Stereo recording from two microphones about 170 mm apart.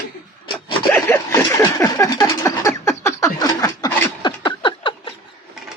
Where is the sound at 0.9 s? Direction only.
10° left (ahead or behind); by 5.1 s 30° left (ahead or behind).